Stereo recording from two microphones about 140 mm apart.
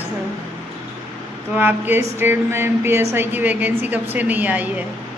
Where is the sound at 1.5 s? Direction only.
15° right (ahead or behind).